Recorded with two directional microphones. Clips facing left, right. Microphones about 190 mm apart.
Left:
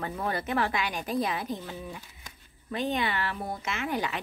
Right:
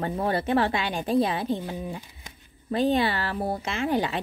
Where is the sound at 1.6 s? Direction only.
15° right (ahead or behind).